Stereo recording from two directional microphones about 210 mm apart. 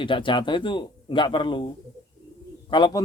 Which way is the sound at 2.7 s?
20° left (ahead or behind).